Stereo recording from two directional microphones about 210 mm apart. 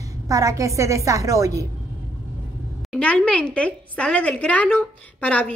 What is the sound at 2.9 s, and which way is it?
A woman's voice, 5° left (ahead or behind).